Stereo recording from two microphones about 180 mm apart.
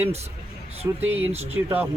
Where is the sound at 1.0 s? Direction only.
10° right (ahead or behind).